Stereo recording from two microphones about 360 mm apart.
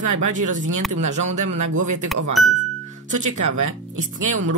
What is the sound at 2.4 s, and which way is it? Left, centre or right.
Speech, centre.